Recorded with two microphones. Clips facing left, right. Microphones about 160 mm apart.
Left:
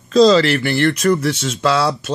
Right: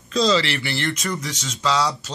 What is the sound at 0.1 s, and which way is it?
Speech, 40° left (ahead or behind).